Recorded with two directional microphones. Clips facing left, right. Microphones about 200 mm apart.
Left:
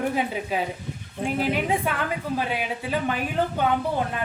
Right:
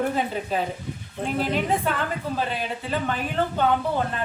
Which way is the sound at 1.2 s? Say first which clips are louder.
Even; 10° left (ahead or behind).